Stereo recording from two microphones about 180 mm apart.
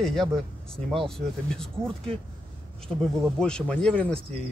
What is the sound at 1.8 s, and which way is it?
Speech, 30° right (ahead or behind).